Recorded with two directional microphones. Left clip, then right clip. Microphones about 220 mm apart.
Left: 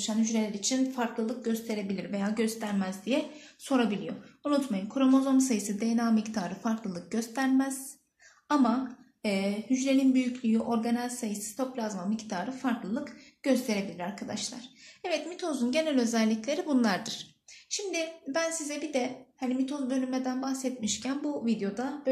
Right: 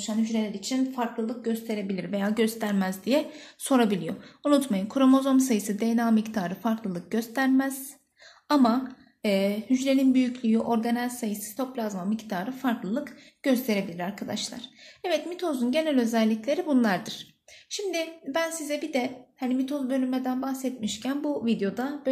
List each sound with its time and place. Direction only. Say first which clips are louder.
0.0 s a woman's voice: right 1 dB; 20° right (ahead or behind)